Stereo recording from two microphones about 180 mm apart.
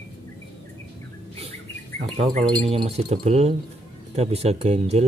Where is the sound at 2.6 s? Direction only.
35° right (ahead or behind).